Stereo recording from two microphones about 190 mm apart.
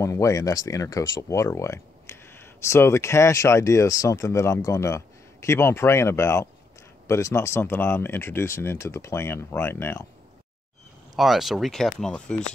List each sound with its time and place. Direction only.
0.0 s speech: 15° left (ahead or behind)
11.1 s speech: centre (ahead or behind)